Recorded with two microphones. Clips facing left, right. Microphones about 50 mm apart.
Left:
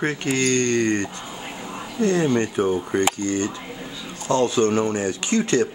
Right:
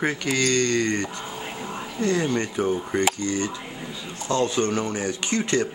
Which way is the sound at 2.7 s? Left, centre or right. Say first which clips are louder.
Left 2 dB; left.